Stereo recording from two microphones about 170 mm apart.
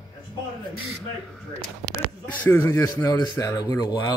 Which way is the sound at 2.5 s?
15° left (ahead or behind).